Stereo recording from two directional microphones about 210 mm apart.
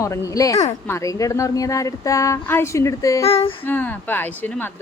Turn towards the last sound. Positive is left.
turn(degrees=10)  # may be behind; listen again after turning